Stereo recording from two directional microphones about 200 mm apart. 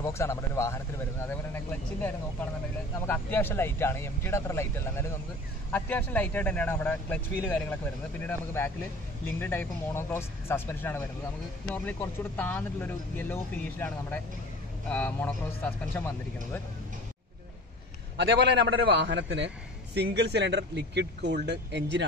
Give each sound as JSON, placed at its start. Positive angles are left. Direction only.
{"t": 0.0, "sound": "speech", "side_deg": 15}
{"t": 18.1, "sound": "a man's voice", "side_deg": -60}